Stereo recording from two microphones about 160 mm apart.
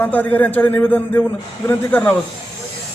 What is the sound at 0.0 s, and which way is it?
A man's voice, 10° left (ahead or behind).